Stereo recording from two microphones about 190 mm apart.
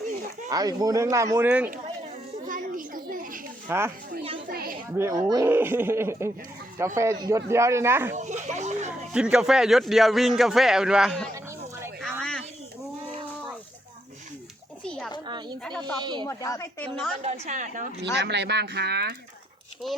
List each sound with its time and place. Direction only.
0.5 s speech: 20° right (ahead or behind)
2.5 s a sound: 45° right (ahead or behind)
3.7 s speech: 10° right (ahead or behind)
4.4 s children playing: 50° right (ahead or behind)
4.9 s speech: 15° right (ahead or behind)
8.1 s speech: 40° right (ahead or behind)
9.1 s a man's voice: 5° right (ahead or behind)
14.8 s a sound: centre (ahead or behind)
15.3 s a sound: 20° right (ahead or behind)
16.0 s speech: 20° right (ahead or behind)
16.2 s a woman's voice: 15° left (ahead or behind)
17.2 s a woman's voice: 35° right (ahead or behind)
18.0 s speech: 65° right (ahead or behind)